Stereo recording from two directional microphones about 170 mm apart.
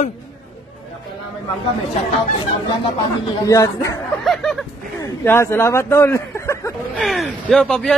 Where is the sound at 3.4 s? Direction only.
20° left (ahead or behind).